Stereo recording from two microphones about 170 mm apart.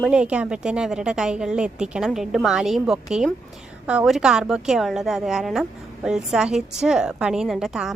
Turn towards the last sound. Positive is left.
turn(degrees=-5)  # may be behind; listen again after turning